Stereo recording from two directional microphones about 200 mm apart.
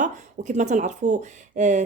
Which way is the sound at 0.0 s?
35° right (ahead or behind).